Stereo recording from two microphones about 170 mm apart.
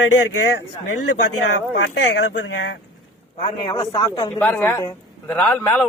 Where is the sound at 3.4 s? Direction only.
25° left (ahead or behind).